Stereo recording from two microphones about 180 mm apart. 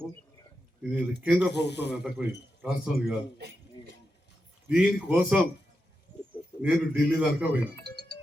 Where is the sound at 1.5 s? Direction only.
70° left (ahead or behind).